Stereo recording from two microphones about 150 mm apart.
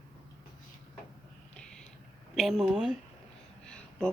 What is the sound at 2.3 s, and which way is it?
Speech, centre (ahead or behind).